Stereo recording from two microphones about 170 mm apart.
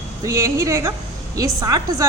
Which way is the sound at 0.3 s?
15° right (ahead or behind).